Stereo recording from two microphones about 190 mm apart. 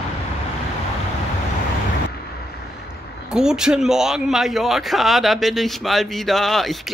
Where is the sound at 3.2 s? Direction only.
5° right (ahead or behind).